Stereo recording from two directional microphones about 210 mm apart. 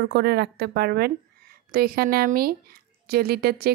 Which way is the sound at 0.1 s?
50° right (ahead or behind).